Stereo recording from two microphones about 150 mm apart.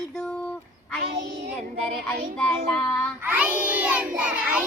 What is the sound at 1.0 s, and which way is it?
Child singing, 90° right.